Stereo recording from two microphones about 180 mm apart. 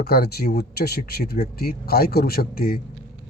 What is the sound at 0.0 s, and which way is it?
Speech, 60° left (ahead or behind).